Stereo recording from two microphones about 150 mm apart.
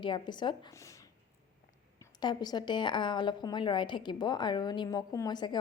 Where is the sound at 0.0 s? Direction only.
30° left (ahead or behind).